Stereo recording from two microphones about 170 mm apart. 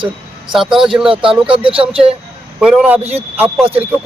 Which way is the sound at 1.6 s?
30° right (ahead or behind).